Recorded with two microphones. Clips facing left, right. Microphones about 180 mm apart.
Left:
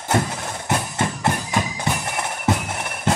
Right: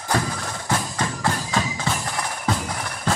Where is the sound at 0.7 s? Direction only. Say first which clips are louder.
Left 2 dB; 20° left (ahead or behind).